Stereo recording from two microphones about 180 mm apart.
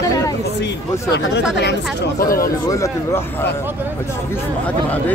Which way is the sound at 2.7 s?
15° left (ahead or behind).